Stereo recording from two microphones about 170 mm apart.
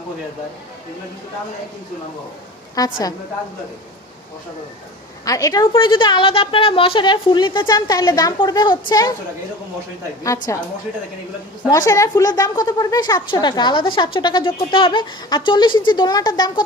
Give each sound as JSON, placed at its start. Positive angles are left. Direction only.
{"t": 2.8, "sound": "a woman's voice", "side_deg": 20}
{"t": 5.2, "sound": "a woman's voice", "side_deg": 20}
{"t": 10.2, "sound": "a woman's voice", "side_deg": 20}
{"t": 11.7, "sound": "a woman's voice", "side_deg": 20}